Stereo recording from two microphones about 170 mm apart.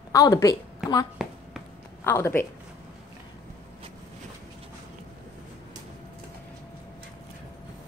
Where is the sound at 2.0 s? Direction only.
15° left (ahead or behind).